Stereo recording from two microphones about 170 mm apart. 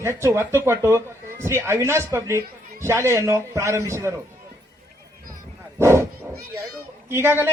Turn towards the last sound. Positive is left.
turn(degrees=-15)  # may be behind; listen again after turning